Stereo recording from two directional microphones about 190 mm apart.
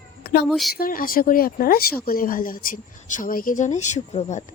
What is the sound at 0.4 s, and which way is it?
Speech, centre (ahead or behind).